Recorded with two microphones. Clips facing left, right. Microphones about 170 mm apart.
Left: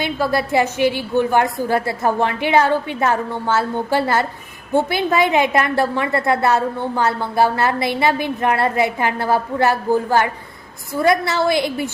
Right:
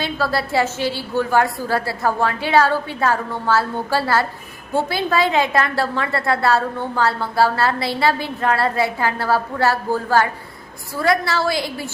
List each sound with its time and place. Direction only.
0.0 s a woman's voice: 15° left (ahead or behind)